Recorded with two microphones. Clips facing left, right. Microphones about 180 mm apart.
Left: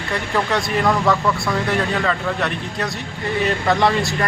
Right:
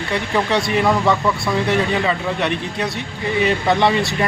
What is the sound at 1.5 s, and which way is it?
Speech, 20° right (ahead or behind).